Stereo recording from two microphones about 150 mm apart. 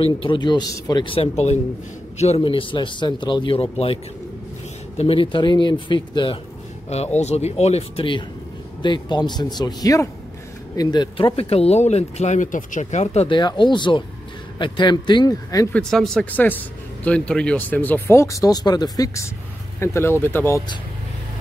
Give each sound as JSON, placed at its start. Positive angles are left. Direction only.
{"t": 0.0, "sound": "speech", "side_deg": 35}
{"t": 6.9, "sound": "speech", "side_deg": 45}
{"t": 13.4, "sound": "speech", "side_deg": 30}
{"t": 15.7, "sound": "speech", "side_deg": 5}